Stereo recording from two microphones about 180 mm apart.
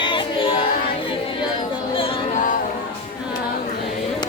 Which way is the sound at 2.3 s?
45° left (ahead or behind).